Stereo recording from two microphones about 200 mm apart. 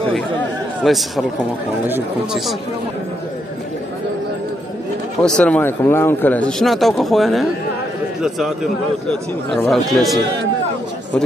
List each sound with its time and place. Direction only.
0.8 s speech: centre (ahead or behind)
5.2 s speech: 5° left (ahead or behind)